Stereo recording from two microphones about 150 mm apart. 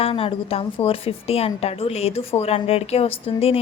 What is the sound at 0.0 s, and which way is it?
A woman's voice, 40° left (ahead or behind).